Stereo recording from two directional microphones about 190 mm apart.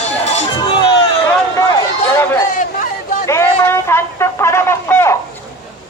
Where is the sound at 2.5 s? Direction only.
45° left (ahead or behind).